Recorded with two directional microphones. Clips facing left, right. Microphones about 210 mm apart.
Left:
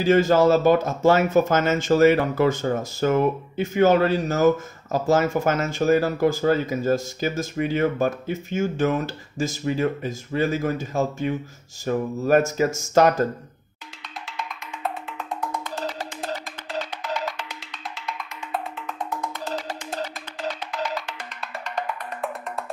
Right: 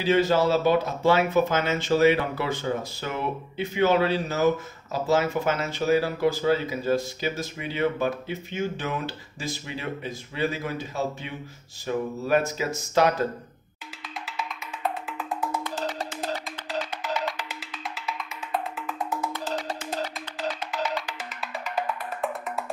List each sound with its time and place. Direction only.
0.0 s speech: 45° left (ahead or behind)
14.2 s music: 5° right (ahead or behind)
16.7 s music: centre (ahead or behind)